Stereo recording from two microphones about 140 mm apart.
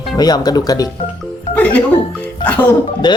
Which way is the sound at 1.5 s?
10° left (ahead or behind).